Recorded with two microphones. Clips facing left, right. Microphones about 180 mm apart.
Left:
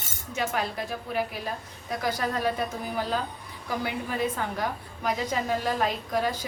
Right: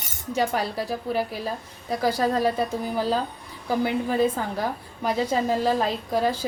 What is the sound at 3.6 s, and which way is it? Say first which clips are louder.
A woman's voice: right 7 dB; 30° right (ahead or behind).